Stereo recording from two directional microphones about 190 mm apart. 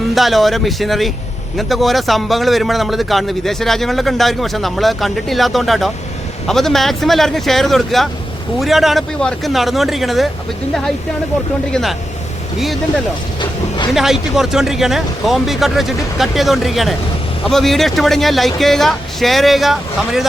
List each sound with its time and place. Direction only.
0.1 s a man's voice: centre (ahead or behind)
11.7 s a man's voice: centre (ahead or behind)
13.9 s a man's voice: centre (ahead or behind)